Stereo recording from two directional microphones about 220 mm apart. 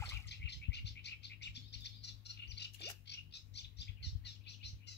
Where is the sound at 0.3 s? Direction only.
50° left (ahead or behind).